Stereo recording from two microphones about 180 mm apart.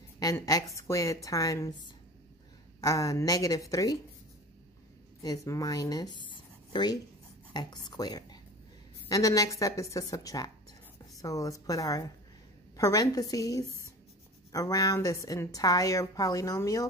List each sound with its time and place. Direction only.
0.2 s a woman's voice: 20° left (ahead or behind)
5.2 s a woman's voice: 20° left (ahead or behind)